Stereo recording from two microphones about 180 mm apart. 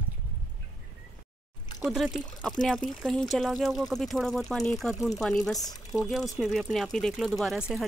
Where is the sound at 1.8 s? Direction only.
5° right (ahead or behind).